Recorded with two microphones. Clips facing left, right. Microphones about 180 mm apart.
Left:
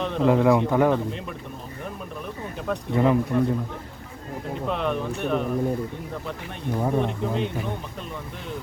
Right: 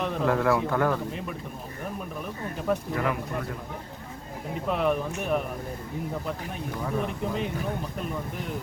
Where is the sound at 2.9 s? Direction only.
25° left (ahead or behind).